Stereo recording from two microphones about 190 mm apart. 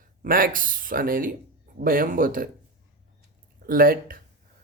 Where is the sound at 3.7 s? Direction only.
50° right (ahead or behind).